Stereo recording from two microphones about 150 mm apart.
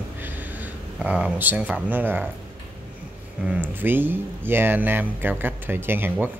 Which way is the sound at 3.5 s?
15° right (ahead or behind).